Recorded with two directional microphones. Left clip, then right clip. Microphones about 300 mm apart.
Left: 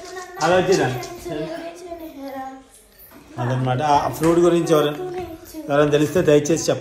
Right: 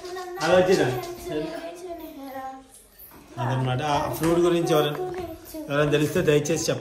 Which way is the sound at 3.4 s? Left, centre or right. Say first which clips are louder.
Left 5 dB; centre.